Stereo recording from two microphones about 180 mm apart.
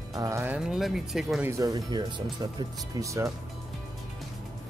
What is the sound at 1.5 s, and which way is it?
Speech, 20° right (ahead or behind).